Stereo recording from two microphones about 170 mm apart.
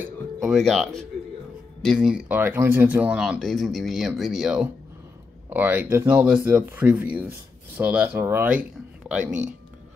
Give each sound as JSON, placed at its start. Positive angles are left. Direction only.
{"t": 0.4, "sound": "speech", "side_deg": 0}
{"t": 9.2, "sound": "speech", "side_deg": -45}